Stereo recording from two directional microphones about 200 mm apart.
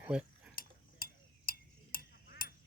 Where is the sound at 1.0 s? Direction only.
45° left (ahead or behind).